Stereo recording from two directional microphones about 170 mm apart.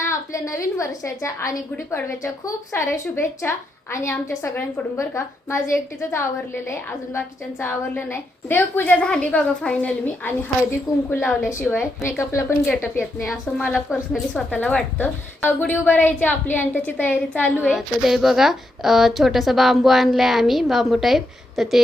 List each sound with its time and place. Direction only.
0.0 s a woman's voice: 15° left (ahead or behind); by 21.8 s centre (ahead or behind)